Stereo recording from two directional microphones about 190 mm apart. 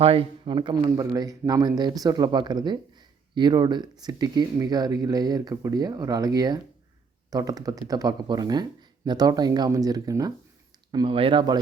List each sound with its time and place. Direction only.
0.0 s speech: 30° right (ahead or behind)